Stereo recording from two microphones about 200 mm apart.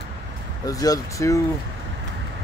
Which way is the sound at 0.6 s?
15° left (ahead or behind).